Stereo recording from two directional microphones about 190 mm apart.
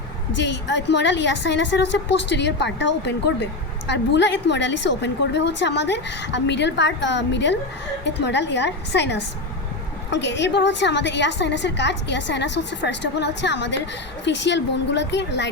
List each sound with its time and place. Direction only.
0.3 s a woman's voice: 65° left (ahead or behind)